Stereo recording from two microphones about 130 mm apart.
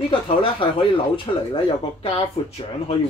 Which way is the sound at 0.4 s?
40° left (ahead or behind).